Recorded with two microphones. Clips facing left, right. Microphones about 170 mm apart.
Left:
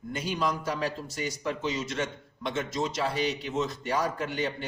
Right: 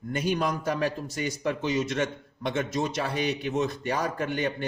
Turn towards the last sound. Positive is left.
turn(degrees=-55)  # may be behind; listen again after turning